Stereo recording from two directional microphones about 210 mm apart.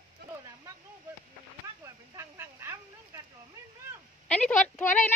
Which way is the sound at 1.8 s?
15° right (ahead or behind).